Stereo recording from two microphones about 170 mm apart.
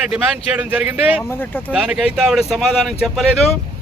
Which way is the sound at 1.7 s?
5° right (ahead or behind).